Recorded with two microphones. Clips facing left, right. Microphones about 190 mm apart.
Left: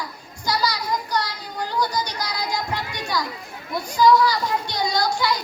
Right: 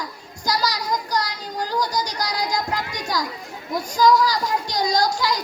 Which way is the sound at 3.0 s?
40° right (ahead or behind).